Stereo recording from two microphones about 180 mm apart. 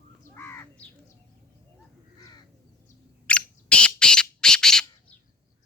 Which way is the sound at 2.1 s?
20° left (ahead or behind).